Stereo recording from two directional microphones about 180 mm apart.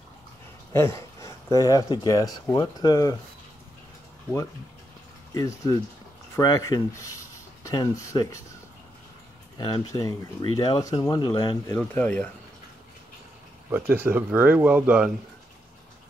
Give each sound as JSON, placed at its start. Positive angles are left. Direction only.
{"t": 0.7, "sound": "speech", "side_deg": 15}
{"t": 5.3, "sound": "speech", "side_deg": 20}
{"t": 9.6, "sound": "speech", "side_deg": 25}
{"t": 11.8, "sound": "speech", "side_deg": 10}
{"t": 13.7, "sound": "speech", "side_deg": -10}